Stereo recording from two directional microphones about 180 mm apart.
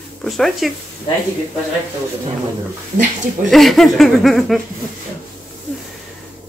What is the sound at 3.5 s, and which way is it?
Speech, centre (ahead or behind).